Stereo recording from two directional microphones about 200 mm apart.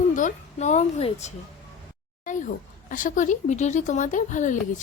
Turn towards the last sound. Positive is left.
turn(degrees=40)  # may be behind; listen again after turning